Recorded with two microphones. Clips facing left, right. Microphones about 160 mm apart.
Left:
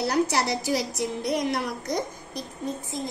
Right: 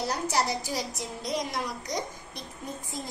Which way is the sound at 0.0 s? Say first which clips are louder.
Left 5 dB; 70° left (ahead or behind).